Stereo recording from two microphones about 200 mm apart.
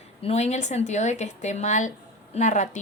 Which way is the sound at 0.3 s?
35° left (ahead or behind).